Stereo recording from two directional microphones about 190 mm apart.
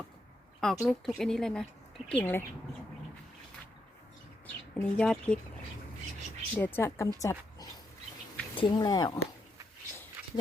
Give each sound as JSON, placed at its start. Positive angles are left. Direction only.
{"t": 0.6, "sound": "a woman's voice", "side_deg": 0}
{"t": 4.4, "sound": "a woman's voice", "side_deg": 5}
{"t": 6.6, "sound": "a woman's voice", "side_deg": 10}
{"t": 7.2, "sound": "a sound", "side_deg": 15}
{"t": 8.5, "sound": "speech", "side_deg": 25}